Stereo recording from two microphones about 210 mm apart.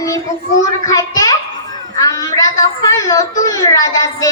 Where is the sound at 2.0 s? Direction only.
15° left (ahead or behind).